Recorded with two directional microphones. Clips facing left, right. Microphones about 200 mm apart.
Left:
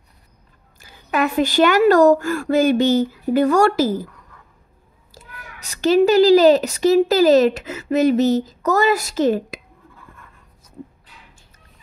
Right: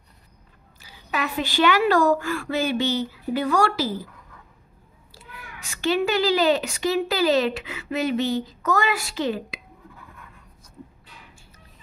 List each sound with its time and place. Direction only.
0.7 s a woman's voice: 50° left (ahead or behind)
5.1 s a woman's voice: 40° left (ahead or behind)